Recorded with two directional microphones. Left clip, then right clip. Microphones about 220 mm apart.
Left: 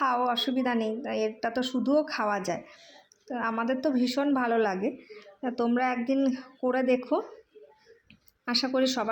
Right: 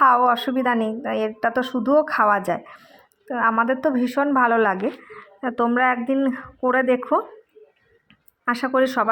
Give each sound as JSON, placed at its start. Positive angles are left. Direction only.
{"t": 0.0, "sound": "a woman's voice", "side_deg": -20}
{"t": 8.4, "sound": "speech", "side_deg": -15}